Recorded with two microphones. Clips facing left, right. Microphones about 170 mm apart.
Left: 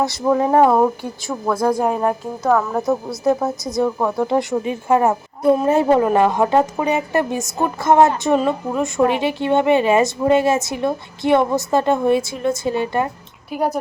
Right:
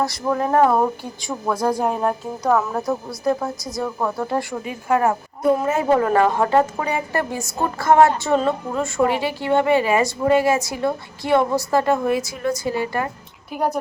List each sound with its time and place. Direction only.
0.1 s speech: 20° left (ahead or behind)
1.5 s speech: 10° right (ahead or behind)
1.8 s speech: centre (ahead or behind)
2.8 s a woman's voice: 20° left (ahead or behind)
6.0 s a woman's voice: 15° left (ahead or behind)